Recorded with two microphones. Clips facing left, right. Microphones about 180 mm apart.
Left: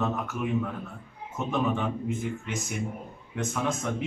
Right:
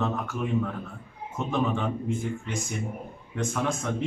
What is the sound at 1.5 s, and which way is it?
A man's voice, 5° left (ahead or behind).